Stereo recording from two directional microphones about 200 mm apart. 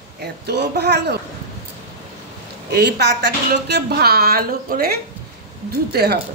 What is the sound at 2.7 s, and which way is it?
A woman's voice, 55° right (ahead or behind).